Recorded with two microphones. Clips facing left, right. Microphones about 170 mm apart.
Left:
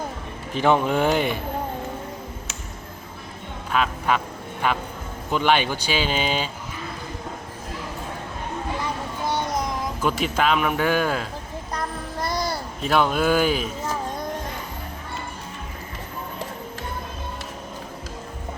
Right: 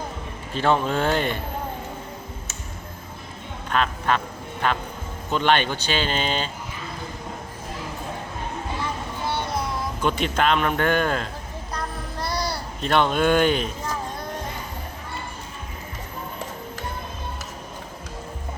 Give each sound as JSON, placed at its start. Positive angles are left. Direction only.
{"t": 0.5, "sound": "speech", "side_deg": 15}
{"t": 3.7, "sound": "speech", "side_deg": 10}
{"t": 9.2, "sound": "music", "side_deg": 15}
{"t": 10.0, "sound": "speech", "side_deg": 5}
{"t": 12.2, "sound": "a sound", "side_deg": 45}
{"t": 12.8, "sound": "speech", "side_deg": 5}